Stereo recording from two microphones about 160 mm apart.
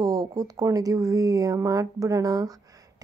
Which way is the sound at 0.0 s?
25° right (ahead or behind).